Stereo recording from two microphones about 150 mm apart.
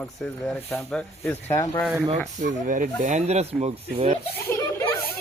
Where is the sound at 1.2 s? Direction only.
15° left (ahead or behind).